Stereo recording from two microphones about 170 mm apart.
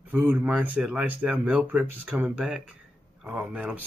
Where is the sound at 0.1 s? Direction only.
10° right (ahead or behind).